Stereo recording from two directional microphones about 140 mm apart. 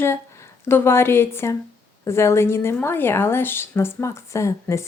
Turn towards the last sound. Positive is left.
turn(degrees=20)  # may be behind; listen again after turning